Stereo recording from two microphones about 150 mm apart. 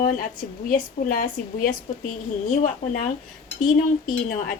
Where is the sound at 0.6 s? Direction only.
65° left (ahead or behind).